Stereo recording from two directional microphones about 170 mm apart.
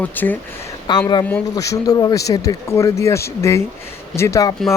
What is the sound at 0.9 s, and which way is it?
Speech, 25° left (ahead or behind).